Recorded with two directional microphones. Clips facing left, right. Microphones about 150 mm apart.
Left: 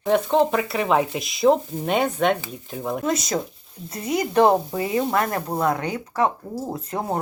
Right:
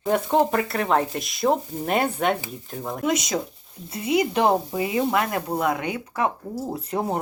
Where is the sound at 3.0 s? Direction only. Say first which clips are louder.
Right 2 dB; 20° right (ahead or behind).